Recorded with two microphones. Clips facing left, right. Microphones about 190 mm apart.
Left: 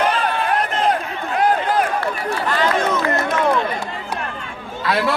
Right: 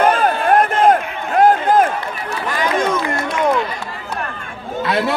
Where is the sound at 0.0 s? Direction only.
45° right (ahead or behind).